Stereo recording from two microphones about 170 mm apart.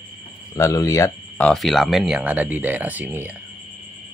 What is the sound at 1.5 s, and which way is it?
Speech, centre (ahead or behind).